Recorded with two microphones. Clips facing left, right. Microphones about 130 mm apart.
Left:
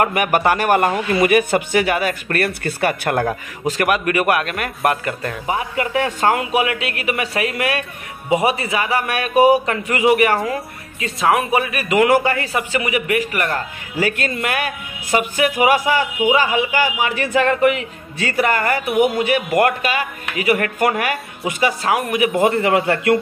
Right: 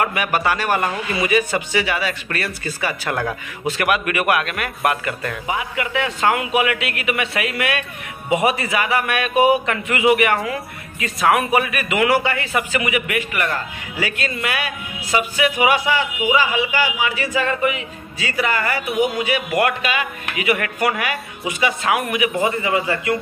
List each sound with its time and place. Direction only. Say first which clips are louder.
0.0 s a man's voice: left 4 dB; 50° left (ahead or behind)
3.6 s a man's voice: left 2 dB; 40° left (ahead or behind)
22.4 s a man's voice: left 4 dB; 60° left (ahead or behind)